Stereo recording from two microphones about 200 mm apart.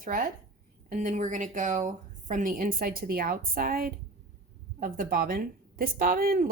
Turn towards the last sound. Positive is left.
turn(degrees=-45)  # may be behind; listen again after turning